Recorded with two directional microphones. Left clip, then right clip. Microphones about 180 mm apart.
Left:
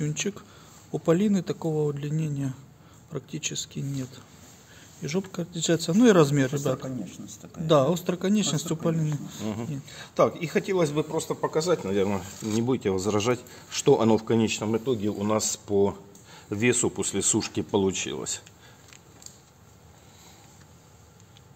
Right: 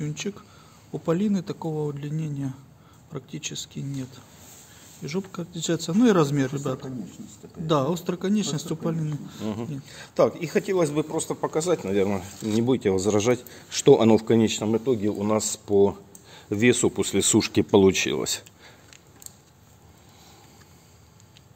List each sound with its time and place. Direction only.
0.0 s speech: 15° left (ahead or behind)
9.4 s speech: 5° right (ahead or behind)
12.4 s speech: 5° left (ahead or behind)
12.6 s speech: 15° right (ahead or behind); by 18.4 s 35° right (ahead or behind)